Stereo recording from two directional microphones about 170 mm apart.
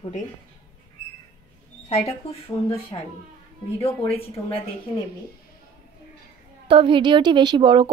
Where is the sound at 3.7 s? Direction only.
35° left (ahead or behind).